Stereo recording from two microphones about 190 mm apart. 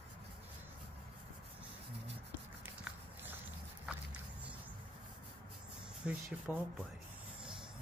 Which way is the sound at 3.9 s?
5° right (ahead or behind).